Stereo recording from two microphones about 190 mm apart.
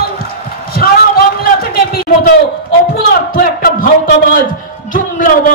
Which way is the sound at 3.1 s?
50° left (ahead or behind).